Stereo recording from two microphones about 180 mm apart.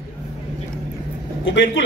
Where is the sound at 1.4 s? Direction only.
90° left.